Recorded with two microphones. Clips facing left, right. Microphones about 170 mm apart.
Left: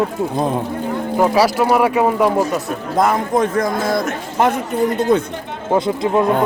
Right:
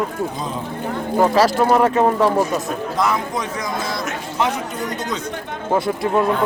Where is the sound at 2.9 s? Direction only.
50° left (ahead or behind).